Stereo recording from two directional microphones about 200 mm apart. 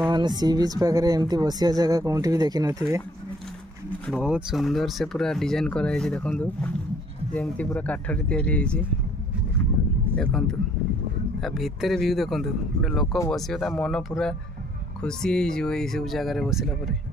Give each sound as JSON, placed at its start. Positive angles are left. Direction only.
{"t": 0.1, "sound": "speech", "side_deg": -20}
{"t": 4.1, "sound": "speech", "side_deg": -5}
{"t": 10.1, "sound": "speech", "side_deg": 5}